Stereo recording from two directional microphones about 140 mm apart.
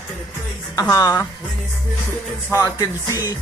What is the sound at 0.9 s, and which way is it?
Speech, 25° left (ahead or behind).